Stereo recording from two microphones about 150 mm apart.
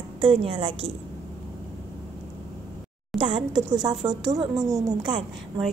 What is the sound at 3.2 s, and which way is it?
A woman's voice, 30° right (ahead or behind).